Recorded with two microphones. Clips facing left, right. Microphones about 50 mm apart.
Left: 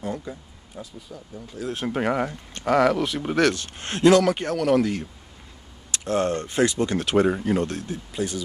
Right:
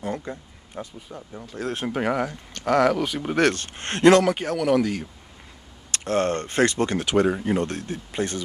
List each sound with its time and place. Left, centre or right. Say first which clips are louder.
0.0 s speech: right 1 dB; right
1.9 s speech: left 1 dB; centre
3.3 s speech: even; right
4.3 s speech: even; centre
5.9 s speech: even; right
7.1 s speech: left 1 dB; centre
7.6 s speech: even; right